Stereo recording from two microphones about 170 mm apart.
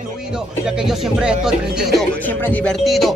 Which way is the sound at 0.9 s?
5° right (ahead or behind).